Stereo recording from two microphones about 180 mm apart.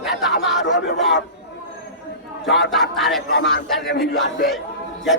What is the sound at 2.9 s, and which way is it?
Speech, centre (ahead or behind).